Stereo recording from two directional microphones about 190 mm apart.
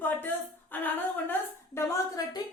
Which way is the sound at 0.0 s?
10° left (ahead or behind).